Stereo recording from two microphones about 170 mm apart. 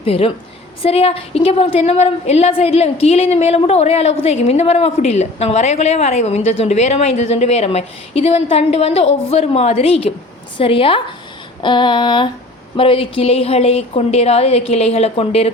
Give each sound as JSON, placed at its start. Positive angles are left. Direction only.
{"t": 0.0, "sound": "a woman's voice", "side_deg": 35}
{"t": 11.6, "sound": "female singing", "side_deg": 30}
{"t": 12.7, "sound": "a woman's voice", "side_deg": 30}